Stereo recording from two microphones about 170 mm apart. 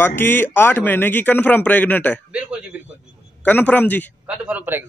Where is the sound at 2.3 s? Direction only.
5° right (ahead or behind).